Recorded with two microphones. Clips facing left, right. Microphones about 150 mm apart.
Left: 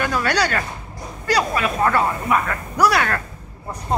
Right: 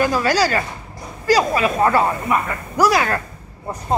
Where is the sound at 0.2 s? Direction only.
5° right (ahead or behind).